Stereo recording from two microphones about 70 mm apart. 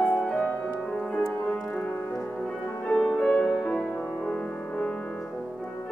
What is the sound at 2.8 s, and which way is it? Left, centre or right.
Music, centre.